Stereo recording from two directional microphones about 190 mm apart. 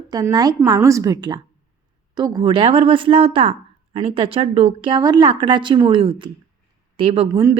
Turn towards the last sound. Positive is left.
turn(degrees=-20)  # may be behind; listen again after turning